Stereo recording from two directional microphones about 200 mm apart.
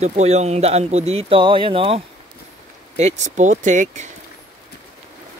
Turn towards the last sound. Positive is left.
turn(degrees=-35)  # may be behind; listen again after turning